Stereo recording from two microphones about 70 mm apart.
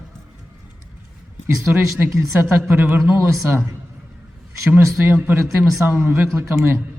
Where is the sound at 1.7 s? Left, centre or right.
Right.